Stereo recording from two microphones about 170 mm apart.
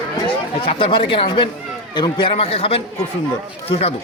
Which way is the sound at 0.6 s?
35° left (ahead or behind).